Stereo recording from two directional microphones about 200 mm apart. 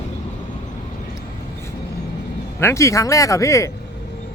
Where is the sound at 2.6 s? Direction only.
15° left (ahead or behind).